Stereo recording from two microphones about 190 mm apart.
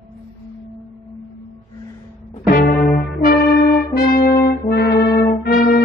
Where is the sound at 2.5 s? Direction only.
50° left (ahead or behind).